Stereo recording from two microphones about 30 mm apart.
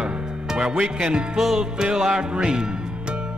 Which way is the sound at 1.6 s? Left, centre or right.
Right.